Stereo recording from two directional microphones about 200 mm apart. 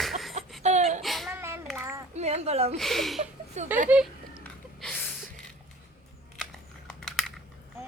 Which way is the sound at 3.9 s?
5° right (ahead or behind).